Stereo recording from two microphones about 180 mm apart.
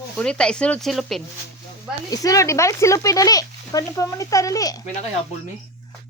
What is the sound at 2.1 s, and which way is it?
Speech, 20° left (ahead or behind).